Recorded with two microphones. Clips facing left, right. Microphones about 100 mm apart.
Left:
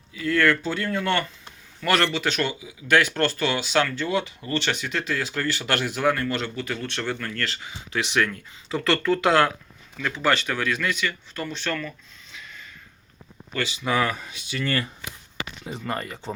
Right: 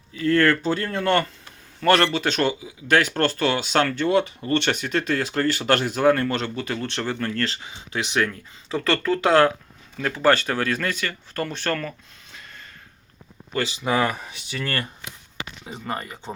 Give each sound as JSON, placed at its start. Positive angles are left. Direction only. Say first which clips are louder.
{"t": 0.1, "sound": "speech", "louder": "right 3 dB", "side_deg": -40}
{"t": 13.5, "sound": "speech", "louder": "right 2 dB", "side_deg": -30}
{"t": 15.9, "sound": "speech", "louder": "even", "side_deg": -15}